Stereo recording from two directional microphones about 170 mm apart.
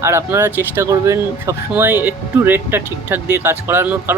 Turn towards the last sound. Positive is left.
turn(degrees=-10)  # may be behind; listen again after turning